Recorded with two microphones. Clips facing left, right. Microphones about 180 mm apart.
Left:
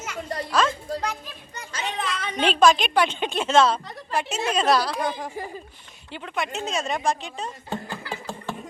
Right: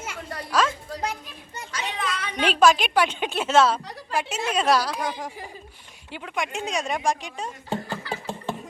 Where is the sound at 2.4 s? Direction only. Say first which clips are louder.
Even; 10° right (ahead or behind).